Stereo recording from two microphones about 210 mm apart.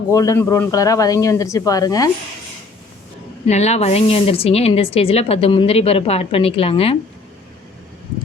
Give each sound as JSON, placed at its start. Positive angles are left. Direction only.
{"t": 0.1, "sound": "speech", "side_deg": 15}
{"t": 3.4, "sound": "a woman's voice", "side_deg": 30}